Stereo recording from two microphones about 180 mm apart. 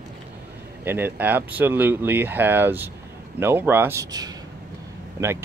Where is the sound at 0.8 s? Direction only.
10° right (ahead or behind).